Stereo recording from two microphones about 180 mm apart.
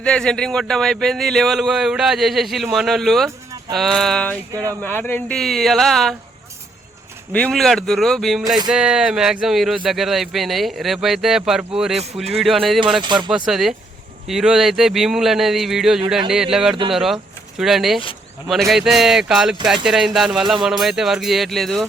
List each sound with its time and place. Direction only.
0.0 s speech: 5° left (ahead or behind)
3.2 s a sound: 20° right (ahead or behind)
3.8 s speech: centre (ahead or behind)
4.5 s speech: 20° right (ahead or behind)
4.8 s speech: 10° left (ahead or behind)
7.3 s speech: 5° left (ahead or behind)
13.0 s speech: 25° right (ahead or behind)
13.3 s speech: 5° right (ahead or behind)